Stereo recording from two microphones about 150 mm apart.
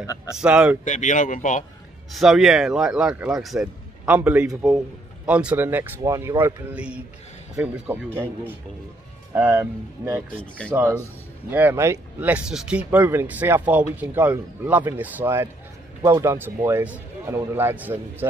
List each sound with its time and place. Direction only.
0.0 s speech: 20° left (ahead or behind)
0.4 s speech: 10° right (ahead or behind)
0.8 s speech: 55° left (ahead or behind)
2.1 s speech: 5° right (ahead or behind); by 6.3 s 20° right (ahead or behind)
6.4 s speech: 10° right (ahead or behind)